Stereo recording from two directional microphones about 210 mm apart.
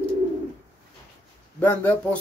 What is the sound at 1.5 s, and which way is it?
Speech, 10° left (ahead or behind).